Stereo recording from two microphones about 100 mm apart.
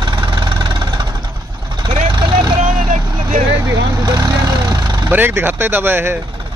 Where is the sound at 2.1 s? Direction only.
45° right (ahead or behind).